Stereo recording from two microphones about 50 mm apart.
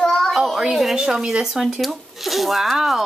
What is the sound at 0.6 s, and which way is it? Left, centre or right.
Speech, centre.